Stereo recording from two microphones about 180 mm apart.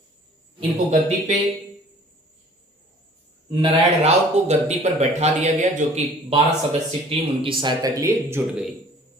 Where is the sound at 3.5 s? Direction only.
35° right (ahead or behind).